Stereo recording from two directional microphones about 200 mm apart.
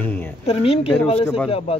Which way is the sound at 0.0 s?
10° left (ahead or behind).